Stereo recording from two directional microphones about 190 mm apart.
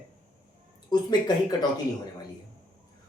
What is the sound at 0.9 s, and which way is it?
Speech, 20° left (ahead or behind).